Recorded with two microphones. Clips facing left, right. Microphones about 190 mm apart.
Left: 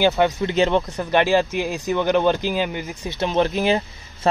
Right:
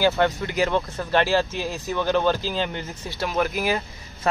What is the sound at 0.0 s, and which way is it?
Speech, 20° left (ahead or behind).